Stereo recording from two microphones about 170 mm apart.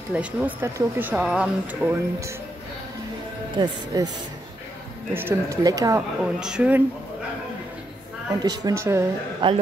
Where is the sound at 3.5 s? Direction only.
25° right (ahead or behind).